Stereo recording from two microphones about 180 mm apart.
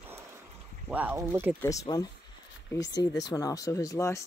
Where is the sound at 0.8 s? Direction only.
10° right (ahead or behind).